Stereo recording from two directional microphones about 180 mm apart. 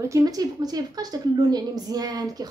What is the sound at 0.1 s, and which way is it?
Speech, 20° right (ahead or behind).